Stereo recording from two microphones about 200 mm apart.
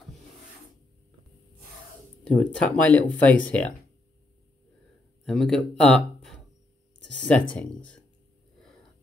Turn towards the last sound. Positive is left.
turn(degrees=5)  # may be behind; listen again after turning